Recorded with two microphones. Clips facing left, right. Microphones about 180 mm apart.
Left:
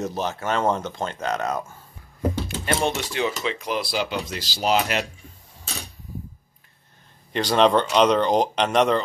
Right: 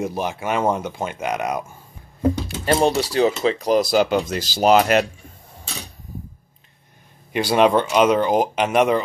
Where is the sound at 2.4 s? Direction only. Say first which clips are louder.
Right 7 dB; 35° right (ahead or behind).